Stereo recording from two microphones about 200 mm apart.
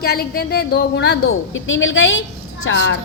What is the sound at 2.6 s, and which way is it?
Speech, 65° left (ahead or behind).